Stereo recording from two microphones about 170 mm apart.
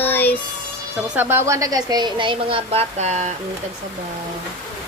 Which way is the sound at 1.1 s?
10° right (ahead or behind).